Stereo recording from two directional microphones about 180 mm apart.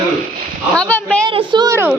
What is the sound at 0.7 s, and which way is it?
Speech, 5° left (ahead or behind).